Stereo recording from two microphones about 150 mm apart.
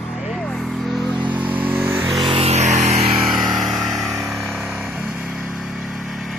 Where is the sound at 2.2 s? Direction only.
40° right (ahead or behind).